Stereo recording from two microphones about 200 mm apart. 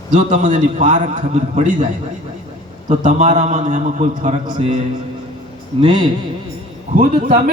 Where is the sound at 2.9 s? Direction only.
40° right (ahead or behind).